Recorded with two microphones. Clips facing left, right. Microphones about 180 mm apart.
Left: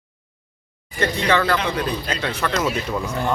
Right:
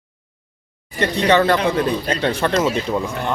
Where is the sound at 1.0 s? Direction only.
25° right (ahead or behind).